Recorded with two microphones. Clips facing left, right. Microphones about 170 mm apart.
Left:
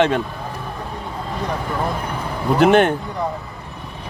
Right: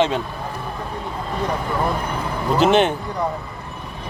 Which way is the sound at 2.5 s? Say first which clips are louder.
Left 2 dB; 55° left (ahead or behind).